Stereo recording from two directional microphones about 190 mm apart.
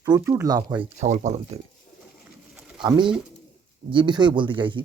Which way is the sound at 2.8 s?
25° right (ahead or behind).